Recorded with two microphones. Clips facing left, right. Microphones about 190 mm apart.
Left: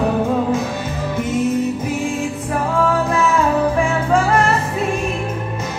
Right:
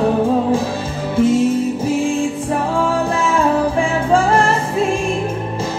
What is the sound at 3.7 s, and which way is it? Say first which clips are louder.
Music: right 1 dB; 30° right (ahead or behind).